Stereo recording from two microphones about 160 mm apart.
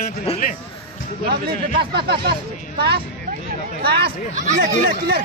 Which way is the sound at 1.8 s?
85° right.